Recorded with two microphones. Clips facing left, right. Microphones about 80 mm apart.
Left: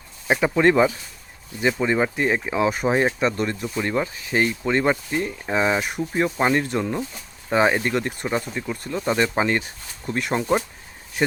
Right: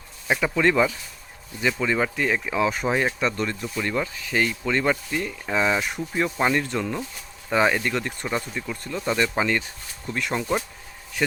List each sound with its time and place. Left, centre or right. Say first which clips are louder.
0.3 s speech: left 3 dB; left
2.5 s speech: left 2 dB; centre